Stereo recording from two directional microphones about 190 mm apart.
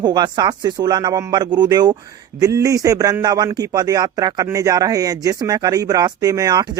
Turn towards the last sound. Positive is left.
turn(degrees=-20)  # may be behind; listen again after turning